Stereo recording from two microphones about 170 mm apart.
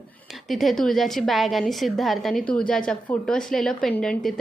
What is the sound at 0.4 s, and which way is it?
A woman's voice, centre (ahead or behind).